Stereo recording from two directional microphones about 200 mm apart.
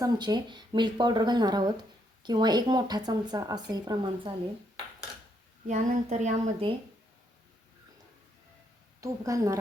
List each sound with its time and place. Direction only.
0.0 s a woman's voice: 20° right (ahead or behind)
5.6 s speech: 40° right (ahead or behind)
9.0 s a woman's voice: 15° right (ahead or behind)